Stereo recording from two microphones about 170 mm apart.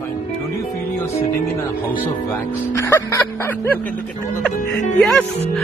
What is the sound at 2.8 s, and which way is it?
Music, 15° left (ahead or behind).